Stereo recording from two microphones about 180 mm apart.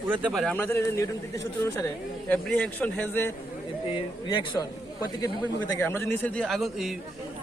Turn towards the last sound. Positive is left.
turn(degrees=0)  # may be behind; listen again after turning